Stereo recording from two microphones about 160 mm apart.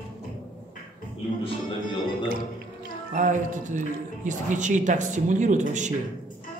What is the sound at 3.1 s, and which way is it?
Speech, 50° right (ahead or behind).